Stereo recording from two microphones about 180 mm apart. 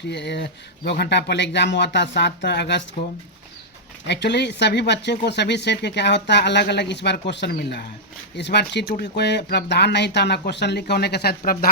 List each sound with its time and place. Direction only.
0.1 s speech: 70° left (ahead or behind)
4.0 s speech: 70° left (ahead or behind)